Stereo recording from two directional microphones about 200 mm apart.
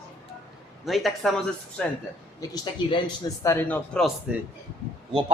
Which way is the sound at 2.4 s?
20° left (ahead or behind).